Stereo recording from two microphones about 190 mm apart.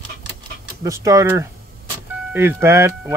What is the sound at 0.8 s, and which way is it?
Speech, 15° right (ahead or behind).